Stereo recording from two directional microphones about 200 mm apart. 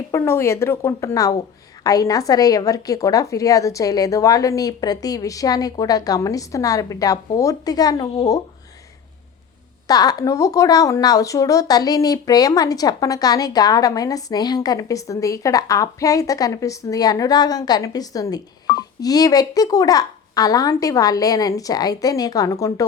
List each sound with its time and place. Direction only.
0.1 s speech: 15° left (ahead or behind)
9.8 s speech: 20° left (ahead or behind)